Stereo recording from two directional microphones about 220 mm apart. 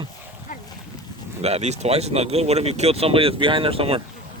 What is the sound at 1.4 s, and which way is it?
Speech, 30° right (ahead or behind).